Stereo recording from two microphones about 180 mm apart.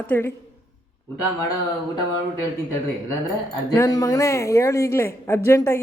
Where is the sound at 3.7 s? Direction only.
20° left (ahead or behind).